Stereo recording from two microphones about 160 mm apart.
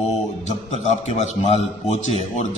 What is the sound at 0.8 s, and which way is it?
A man's voice, 45° left (ahead or behind).